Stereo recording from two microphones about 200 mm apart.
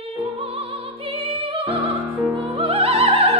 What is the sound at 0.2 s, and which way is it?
Music, 30° right (ahead or behind).